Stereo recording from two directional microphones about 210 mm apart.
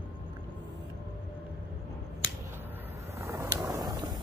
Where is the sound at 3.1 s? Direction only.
15° right (ahead or behind).